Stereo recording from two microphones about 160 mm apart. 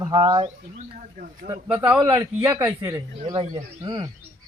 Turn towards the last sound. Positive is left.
turn(degrees=-25)  # may be behind; listen again after turning